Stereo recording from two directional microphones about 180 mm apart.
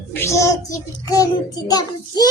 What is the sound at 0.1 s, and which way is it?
A woman's voice, 15° left (ahead or behind).